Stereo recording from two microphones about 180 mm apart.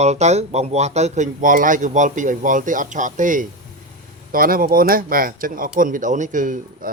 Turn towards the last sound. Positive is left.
turn(degrees=-45)  # may be behind; listen again after turning